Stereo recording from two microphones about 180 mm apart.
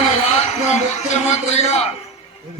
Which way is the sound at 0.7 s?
40° left (ahead or behind).